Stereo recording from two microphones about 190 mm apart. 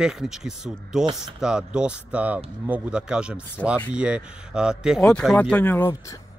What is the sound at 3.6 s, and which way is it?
Speech, 10° left (ahead or behind).